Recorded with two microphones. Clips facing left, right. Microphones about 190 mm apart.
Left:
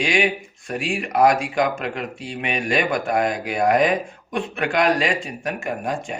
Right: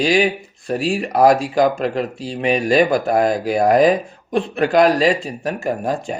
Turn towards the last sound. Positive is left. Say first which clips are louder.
# right 5 dB
turn(degrees=-35)  # may be behind; listen again after turning